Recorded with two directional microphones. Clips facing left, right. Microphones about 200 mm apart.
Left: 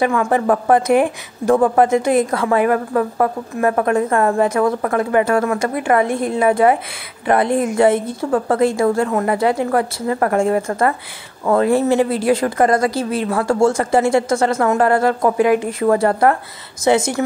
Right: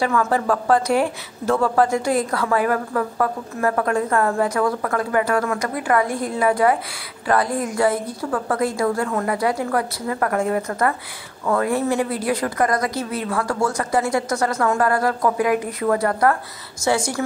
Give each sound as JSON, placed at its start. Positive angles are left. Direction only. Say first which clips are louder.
{"t": 0.0, "sound": "a woman's voice", "louder": "left 4 dB", "side_deg": 15}